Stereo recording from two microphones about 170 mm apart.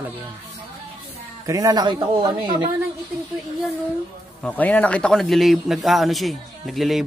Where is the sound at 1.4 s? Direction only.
20° right (ahead or behind).